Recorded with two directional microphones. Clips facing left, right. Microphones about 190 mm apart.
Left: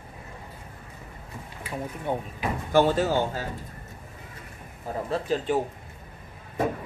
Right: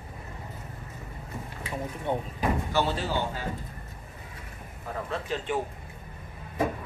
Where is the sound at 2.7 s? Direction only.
45° left (ahead or behind).